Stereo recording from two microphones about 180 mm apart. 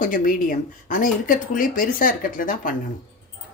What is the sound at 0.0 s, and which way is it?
Speech, 50° left (ahead or behind).